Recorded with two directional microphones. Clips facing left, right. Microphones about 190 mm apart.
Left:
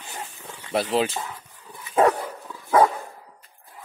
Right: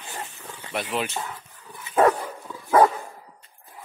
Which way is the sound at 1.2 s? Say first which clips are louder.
Even; 10° left (ahead or behind).